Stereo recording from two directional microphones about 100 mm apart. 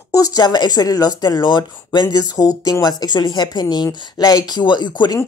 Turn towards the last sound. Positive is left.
turn(degrees=50)  # may be behind; listen again after turning